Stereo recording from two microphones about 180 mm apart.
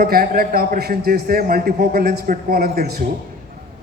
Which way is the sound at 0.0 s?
55° right (ahead or behind).